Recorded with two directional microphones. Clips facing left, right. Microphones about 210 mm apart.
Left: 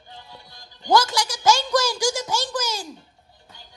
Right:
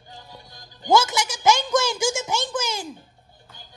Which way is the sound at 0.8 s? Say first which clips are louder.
Even; 20° right (ahead or behind).